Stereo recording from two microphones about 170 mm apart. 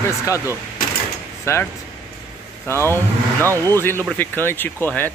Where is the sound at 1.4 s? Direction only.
15° left (ahead or behind).